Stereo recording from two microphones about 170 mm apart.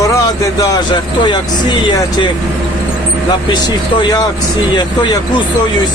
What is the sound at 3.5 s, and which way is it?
Speech, 25° left (ahead or behind).